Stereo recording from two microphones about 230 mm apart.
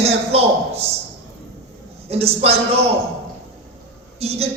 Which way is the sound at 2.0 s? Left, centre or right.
Right.